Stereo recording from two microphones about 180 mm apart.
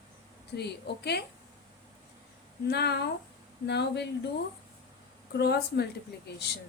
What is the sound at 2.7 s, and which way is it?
Speech, 65° left (ahead or behind).